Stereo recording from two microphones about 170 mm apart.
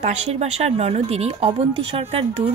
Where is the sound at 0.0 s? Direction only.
40° right (ahead or behind).